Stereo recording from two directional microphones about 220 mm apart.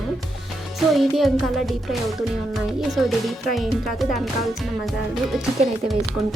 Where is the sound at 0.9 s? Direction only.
Centre (ahead or behind).